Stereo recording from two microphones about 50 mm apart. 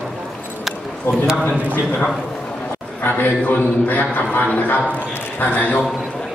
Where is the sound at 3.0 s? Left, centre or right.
Left.